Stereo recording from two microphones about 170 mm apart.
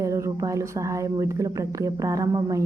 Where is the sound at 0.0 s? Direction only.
20° right (ahead or behind).